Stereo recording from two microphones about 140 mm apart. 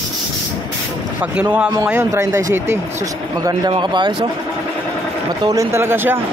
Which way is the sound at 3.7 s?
35° right (ahead or behind).